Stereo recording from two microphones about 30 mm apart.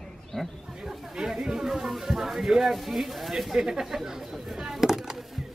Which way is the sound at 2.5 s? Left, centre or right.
Centre.